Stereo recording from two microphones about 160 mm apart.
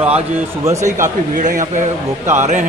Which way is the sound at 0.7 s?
50° right (ahead or behind).